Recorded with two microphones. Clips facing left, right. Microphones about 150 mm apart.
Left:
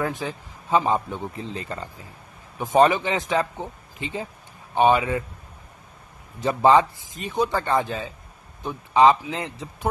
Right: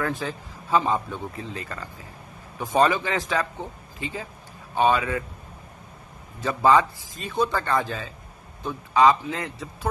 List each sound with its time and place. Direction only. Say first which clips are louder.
0.0 s a man's voice: left 1 dB; 15° left (ahead or behind)
6.4 s a man's voice: left 2 dB; 25° left (ahead or behind)